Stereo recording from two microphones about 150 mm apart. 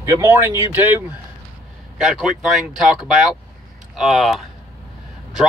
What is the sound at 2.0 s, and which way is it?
Speech, centre (ahead or behind).